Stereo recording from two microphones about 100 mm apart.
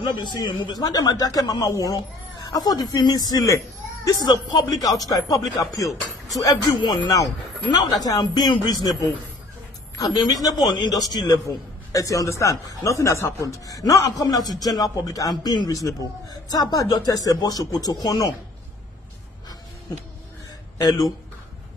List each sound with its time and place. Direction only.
0.0 s a man's voice: 50° left (ahead or behind)
9.9 s a man's voice: 40° left (ahead or behind)
20.7 s speech: 35° left (ahead or behind)